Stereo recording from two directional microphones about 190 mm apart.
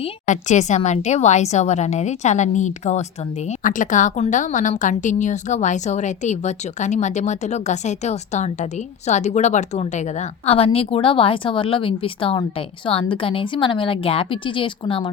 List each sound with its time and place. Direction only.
0.0 s a woman's voice: 40° left (ahead or behind)